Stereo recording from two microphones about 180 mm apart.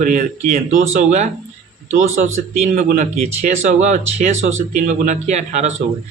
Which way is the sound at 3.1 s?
40° right (ahead or behind).